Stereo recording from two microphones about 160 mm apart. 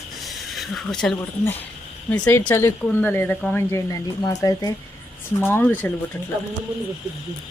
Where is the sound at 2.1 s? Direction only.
10° left (ahead or behind).